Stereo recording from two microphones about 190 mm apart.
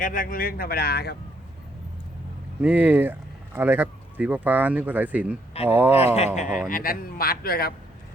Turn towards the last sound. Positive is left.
turn(degrees=50)  # may be behind; listen again after turning